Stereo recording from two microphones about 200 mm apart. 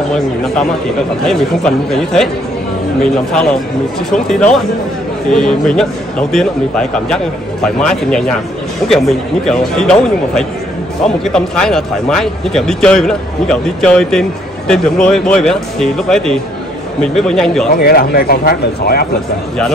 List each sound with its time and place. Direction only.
1.2 s speech: centre (ahead or behind)
17.7 s speech: 50° left (ahead or behind)